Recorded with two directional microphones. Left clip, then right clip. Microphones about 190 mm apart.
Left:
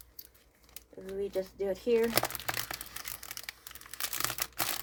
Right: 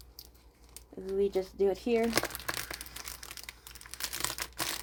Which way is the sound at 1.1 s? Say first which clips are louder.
Right 5 dB; 35° right (ahead or behind).